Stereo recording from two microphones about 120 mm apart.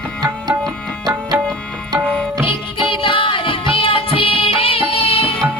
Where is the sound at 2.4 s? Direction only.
45° left (ahead or behind).